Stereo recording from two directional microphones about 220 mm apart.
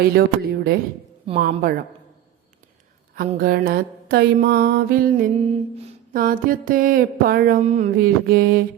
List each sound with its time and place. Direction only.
0.0 s speech: 45° right (ahead or behind)
1.4 s mantra: 40° right (ahead or behind)
3.2 s mantra: 40° right (ahead or behind)
6.1 s mantra: 40° right (ahead or behind)